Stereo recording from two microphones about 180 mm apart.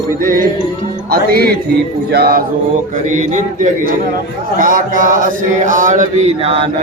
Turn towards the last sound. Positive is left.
turn(degrees=-35)  # may be behind; listen again after turning